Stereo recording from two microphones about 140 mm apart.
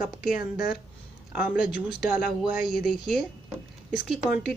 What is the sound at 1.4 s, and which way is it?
Speech, 10° right (ahead or behind).